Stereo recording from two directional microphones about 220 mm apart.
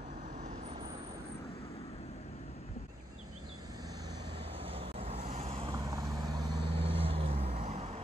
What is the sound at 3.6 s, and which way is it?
Vehicle, 15° right (ahead or behind).